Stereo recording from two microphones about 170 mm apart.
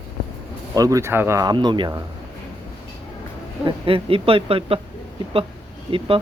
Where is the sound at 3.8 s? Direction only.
30° right (ahead or behind).